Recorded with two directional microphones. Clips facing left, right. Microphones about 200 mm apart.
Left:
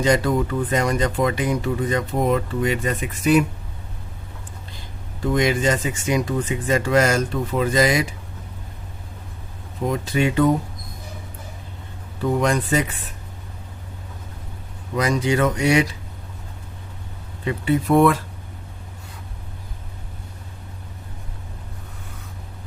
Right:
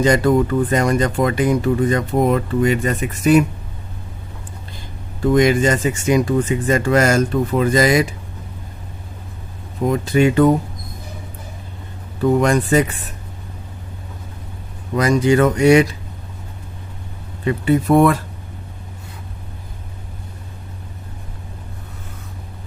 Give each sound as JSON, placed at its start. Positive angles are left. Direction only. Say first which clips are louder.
{"t": 0.0, "sound": "speech", "louder": "right 5 dB", "side_deg": -50}
{"t": 5.3, "sound": "speech", "louder": "right 5 dB", "side_deg": -50}
{"t": 9.9, "sound": "speech", "louder": "right 6 dB", "side_deg": -50}
{"t": 12.2, "sound": "speech", "louder": "right 5 dB", "side_deg": -50}
{"t": 14.9, "sound": "speech", "louder": "right 6 dB", "side_deg": -50}
{"t": 17.4, "sound": "speech", "louder": "right 4 dB", "side_deg": -45}